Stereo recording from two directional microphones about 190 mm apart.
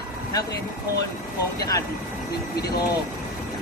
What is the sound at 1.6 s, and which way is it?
Speech, 20° left (ahead or behind).